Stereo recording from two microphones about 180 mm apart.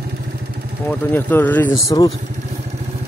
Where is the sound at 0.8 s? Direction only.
10° left (ahead or behind).